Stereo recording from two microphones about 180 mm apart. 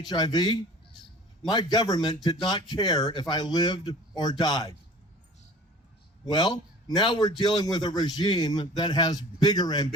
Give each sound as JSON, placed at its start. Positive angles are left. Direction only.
{"t": 0.1, "sound": "speech", "side_deg": 25}
{"t": 6.3, "sound": "speech", "side_deg": 25}